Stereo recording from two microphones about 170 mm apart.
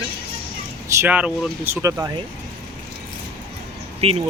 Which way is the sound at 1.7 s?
15° right (ahead or behind).